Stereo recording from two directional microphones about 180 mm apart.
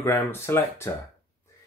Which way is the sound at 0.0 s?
15° left (ahead or behind).